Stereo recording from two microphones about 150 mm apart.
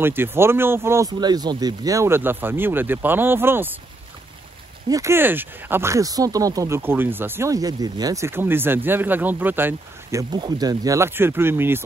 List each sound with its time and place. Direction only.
0.0 s speech: 15° right (ahead or behind)
4.8 s speech: 20° right (ahead or behind)
10.3 s speech: 30° right (ahead or behind)